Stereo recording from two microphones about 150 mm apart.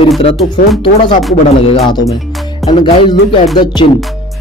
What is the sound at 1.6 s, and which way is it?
Music, 40° left (ahead or behind).